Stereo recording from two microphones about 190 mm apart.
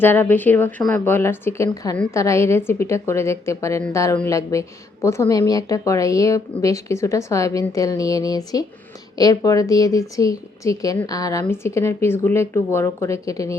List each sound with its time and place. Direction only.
0.0 s a woman's voice: 10° left (ahead or behind)